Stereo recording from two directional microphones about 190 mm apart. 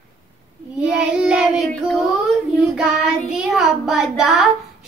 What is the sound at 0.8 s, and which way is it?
Child singing, 5° right (ahead or behind).